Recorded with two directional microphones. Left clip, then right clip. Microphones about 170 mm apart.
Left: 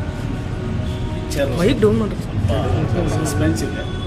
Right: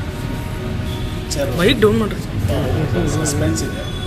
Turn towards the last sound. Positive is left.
turn(degrees=-25)  # may be behind; listen again after turning